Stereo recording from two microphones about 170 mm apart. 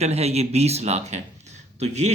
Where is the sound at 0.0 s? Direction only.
40° right (ahead or behind).